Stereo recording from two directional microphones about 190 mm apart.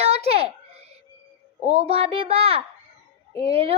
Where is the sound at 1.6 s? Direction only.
30° right (ahead or behind).